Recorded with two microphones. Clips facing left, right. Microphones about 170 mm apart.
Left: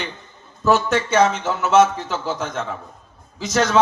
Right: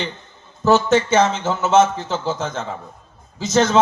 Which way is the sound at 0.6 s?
25° right (ahead or behind).